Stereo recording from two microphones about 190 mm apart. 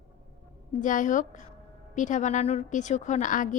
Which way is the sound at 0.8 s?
40° left (ahead or behind).